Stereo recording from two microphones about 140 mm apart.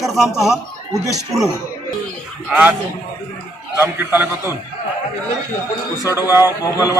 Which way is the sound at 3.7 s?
15° right (ahead or behind).